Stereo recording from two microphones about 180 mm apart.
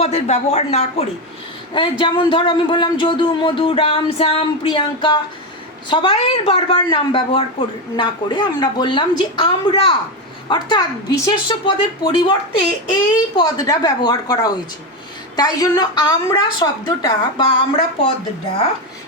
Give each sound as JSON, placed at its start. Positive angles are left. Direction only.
{"t": 0.0, "sound": "speech", "side_deg": 40}